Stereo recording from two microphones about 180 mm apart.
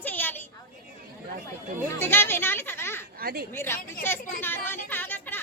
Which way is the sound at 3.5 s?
15° left (ahead or behind).